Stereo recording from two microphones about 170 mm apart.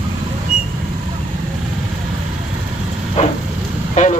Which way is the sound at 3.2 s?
40° left (ahead or behind).